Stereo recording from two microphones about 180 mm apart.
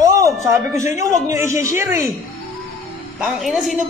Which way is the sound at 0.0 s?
15° right (ahead or behind).